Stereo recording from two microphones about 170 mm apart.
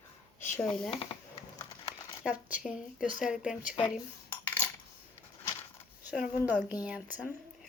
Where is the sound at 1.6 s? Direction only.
30° left (ahead or behind).